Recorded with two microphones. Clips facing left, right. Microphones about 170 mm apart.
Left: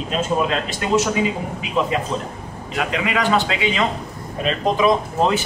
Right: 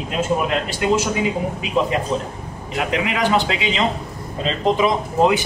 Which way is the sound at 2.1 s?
20° right (ahead or behind).